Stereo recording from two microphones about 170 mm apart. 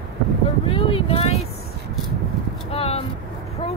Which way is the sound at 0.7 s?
35° left (ahead or behind).